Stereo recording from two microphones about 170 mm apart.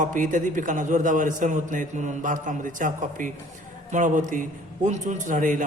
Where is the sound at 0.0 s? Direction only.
50° right (ahead or behind).